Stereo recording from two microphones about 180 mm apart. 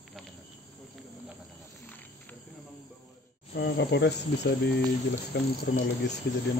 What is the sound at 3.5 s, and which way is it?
Speech, 70° left (ahead or behind).